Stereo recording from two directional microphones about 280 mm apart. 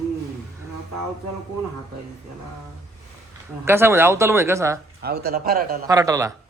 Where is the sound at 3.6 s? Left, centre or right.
Centre.